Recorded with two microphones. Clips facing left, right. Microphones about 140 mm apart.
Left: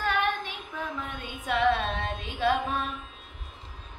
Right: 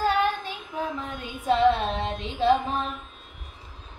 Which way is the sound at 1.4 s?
30° right (ahead or behind).